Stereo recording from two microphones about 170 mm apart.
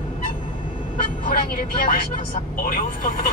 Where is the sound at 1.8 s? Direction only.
55° left (ahead or behind).